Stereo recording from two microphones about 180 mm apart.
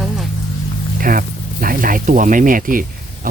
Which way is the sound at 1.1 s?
50° right (ahead or behind).